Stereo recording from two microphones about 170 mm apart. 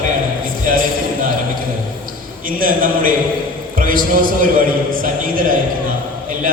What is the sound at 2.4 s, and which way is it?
A man's voice, 55° right (ahead or behind).